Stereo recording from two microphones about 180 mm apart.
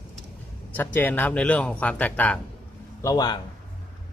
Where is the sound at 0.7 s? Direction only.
10° left (ahead or behind).